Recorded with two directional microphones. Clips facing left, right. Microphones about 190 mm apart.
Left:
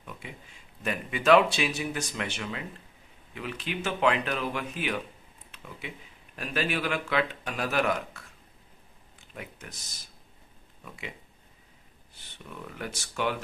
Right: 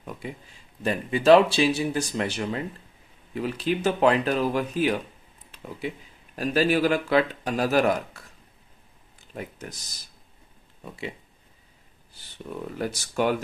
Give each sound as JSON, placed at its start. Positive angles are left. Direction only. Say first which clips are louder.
{"t": 0.8, "sound": "speech", "louder": "right 5 dB", "side_deg": -30}
{"t": 9.3, "sound": "speech", "louder": "right 6 dB", "side_deg": -35}
{"t": 10.8, "sound": "speech", "louder": "right 7 dB", "side_deg": -30}
{"t": 12.6, "sound": "speech", "louder": "right 7 dB", "side_deg": -35}